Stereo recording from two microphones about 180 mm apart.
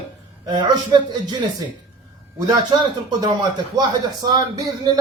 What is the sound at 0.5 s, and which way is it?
Speech, 25° right (ahead or behind).